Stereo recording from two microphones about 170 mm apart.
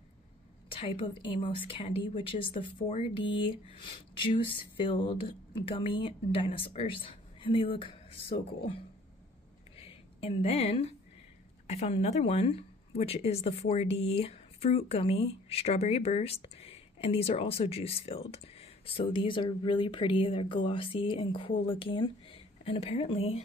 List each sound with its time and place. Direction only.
0.7 s speech: 30° left (ahead or behind)
9.8 s a sound: 35° left (ahead or behind)
11.6 s speech: 40° left (ahead or behind)